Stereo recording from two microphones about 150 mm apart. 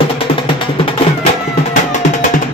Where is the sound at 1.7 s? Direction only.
55° left (ahead or behind).